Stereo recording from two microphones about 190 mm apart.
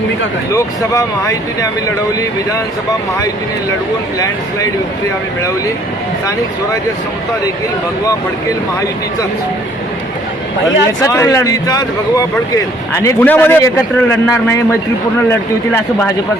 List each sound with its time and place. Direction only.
0.5 s a man's voice: 15° left (ahead or behind)
11.0 s a man's voice: 15° left (ahead or behind)